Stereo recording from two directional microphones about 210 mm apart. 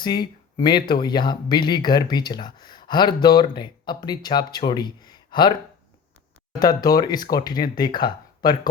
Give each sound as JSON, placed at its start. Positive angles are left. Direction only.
{"t": 0.0, "sound": "speech", "side_deg": 20}
{"t": 6.6, "sound": "speech", "side_deg": 20}